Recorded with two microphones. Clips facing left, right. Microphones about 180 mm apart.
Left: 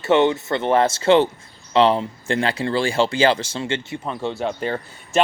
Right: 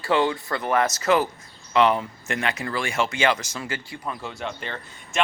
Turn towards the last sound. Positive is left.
turn(degrees=40)  # may be behind; listen again after turning